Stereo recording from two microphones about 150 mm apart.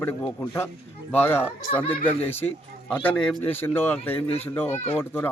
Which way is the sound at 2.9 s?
10° left (ahead or behind).